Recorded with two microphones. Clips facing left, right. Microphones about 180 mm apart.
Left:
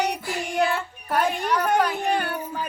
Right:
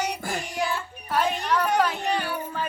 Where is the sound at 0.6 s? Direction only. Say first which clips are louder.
Left 8 dB; 60° left (ahead or behind).